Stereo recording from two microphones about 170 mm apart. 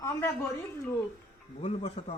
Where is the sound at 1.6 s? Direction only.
40° left (ahead or behind).